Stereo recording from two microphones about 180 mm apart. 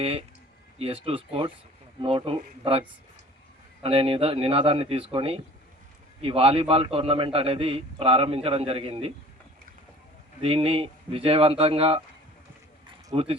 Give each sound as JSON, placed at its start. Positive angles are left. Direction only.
{"t": 0.0, "sound": "a man's voice", "side_deg": -35}
{"t": 3.8, "sound": "a man's voice", "side_deg": -30}
{"t": 10.4, "sound": "a man's voice", "side_deg": -30}
{"t": 13.1, "sound": "a man's voice", "side_deg": -30}